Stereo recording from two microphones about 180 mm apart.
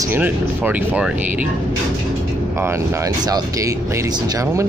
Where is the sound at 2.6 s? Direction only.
15° right (ahead or behind).